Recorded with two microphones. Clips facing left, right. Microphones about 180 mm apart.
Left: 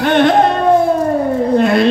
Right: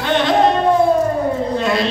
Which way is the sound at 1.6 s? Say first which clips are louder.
Left 6 dB; 55° left (ahead or behind).